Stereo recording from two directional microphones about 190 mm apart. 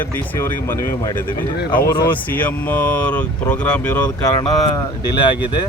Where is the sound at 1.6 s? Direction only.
50° left (ahead or behind).